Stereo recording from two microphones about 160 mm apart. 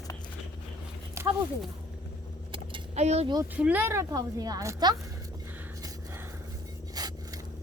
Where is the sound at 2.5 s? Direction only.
35° right (ahead or behind).